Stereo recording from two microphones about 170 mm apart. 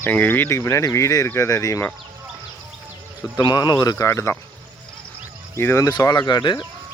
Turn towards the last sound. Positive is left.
turn(degrees=25)  # may be behind; listen again after turning